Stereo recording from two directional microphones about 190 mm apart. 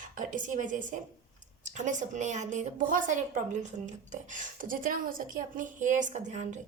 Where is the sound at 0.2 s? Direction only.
45° right (ahead or behind).